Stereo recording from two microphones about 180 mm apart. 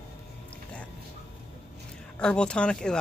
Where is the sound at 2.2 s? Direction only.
5° left (ahead or behind).